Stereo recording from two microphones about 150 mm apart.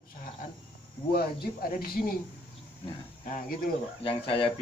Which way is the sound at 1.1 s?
85° left.